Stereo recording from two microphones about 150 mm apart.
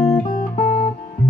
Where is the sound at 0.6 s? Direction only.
45° left (ahead or behind).